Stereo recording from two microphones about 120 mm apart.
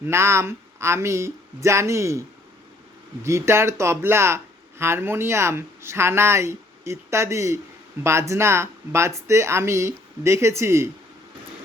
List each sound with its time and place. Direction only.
0.0 s speech: 20° right (ahead or behind)
3.2 s speech: 25° right (ahead or behind)